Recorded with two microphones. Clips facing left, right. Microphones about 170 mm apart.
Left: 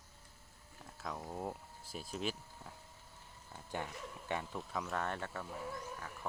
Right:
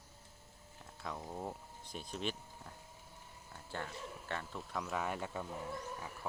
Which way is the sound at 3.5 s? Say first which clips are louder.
Left 2 dB; 15° left (ahead or behind).